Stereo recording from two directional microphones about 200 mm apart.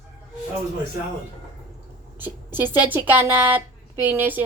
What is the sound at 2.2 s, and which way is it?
A woman's voice, 10° right (ahead or behind).